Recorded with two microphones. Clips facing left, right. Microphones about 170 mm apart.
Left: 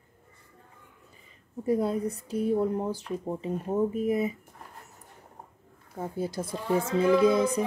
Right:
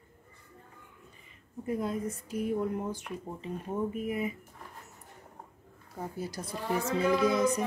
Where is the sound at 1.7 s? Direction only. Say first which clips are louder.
Left 6 dB; 35° left (ahead or behind).